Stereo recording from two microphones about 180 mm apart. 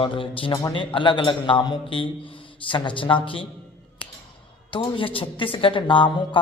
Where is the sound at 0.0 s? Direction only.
30° left (ahead or behind).